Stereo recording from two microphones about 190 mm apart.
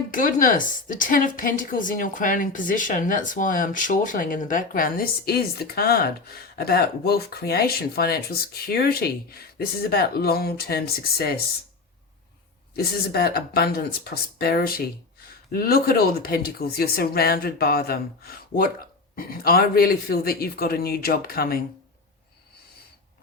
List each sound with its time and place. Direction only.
0.1 s speech: 45° left (ahead or behind)
12.7 s speech: 55° left (ahead or behind)